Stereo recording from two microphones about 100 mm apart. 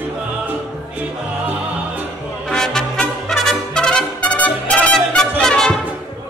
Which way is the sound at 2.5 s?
5° left (ahead or behind).